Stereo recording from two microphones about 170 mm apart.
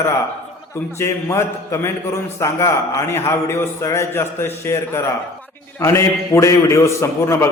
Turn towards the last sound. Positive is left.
turn(degrees=15)  # may be behind; listen again after turning